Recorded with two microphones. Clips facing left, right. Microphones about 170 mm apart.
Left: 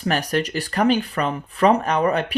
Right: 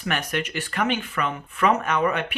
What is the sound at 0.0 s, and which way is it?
Speech, 35° left (ahead or behind).